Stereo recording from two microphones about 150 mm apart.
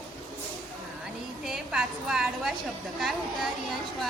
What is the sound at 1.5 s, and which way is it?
A woman's voice, 5° right (ahead or behind).